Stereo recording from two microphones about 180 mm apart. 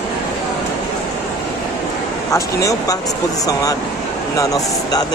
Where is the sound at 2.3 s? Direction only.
20° left (ahead or behind).